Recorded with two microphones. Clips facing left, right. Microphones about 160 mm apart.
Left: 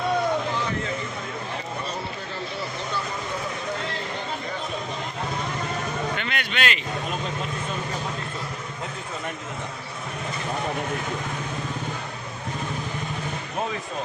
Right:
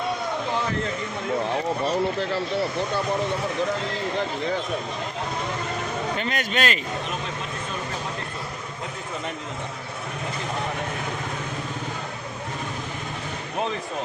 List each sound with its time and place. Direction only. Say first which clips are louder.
6.1 s a man's voice: right 3 dB; 40° right (ahead or behind)